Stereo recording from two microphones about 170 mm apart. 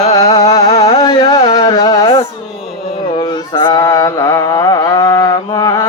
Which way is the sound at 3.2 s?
25° left (ahead or behind).